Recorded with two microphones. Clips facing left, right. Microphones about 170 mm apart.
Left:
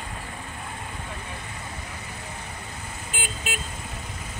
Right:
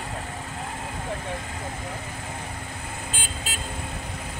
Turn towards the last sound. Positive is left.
turn(degrees=15)  # may be behind; listen again after turning